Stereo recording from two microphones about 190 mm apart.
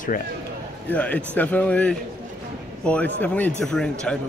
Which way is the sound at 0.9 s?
10° left (ahead or behind).